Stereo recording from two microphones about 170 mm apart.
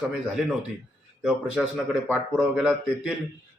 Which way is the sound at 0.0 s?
5° right (ahead or behind).